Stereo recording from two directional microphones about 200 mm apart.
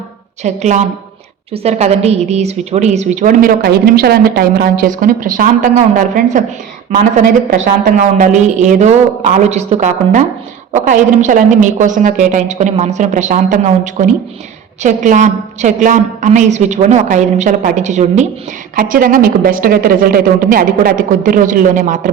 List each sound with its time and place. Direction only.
0.4 s a woman's voice: 35° right (ahead or behind)
7.9 s a woman's voice: 40° right (ahead or behind)